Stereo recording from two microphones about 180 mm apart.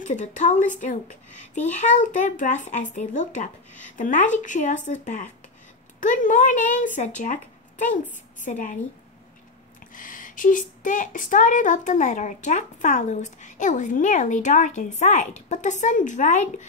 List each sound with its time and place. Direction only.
0.0 s speech: 45° left (ahead or behind)
9.9 s speech: 45° left (ahead or behind)